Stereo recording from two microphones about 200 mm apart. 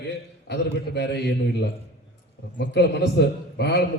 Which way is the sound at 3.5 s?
55° left (ahead or behind).